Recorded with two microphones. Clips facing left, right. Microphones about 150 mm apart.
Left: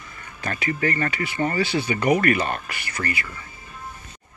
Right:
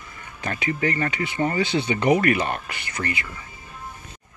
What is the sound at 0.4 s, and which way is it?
Speech, 15° right (ahead or behind).